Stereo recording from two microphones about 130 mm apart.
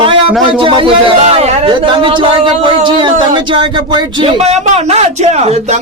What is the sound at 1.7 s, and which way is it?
Speech, 40° right (ahead or behind).